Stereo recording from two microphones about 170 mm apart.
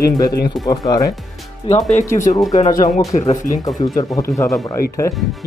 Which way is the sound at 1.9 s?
50° left (ahead or behind).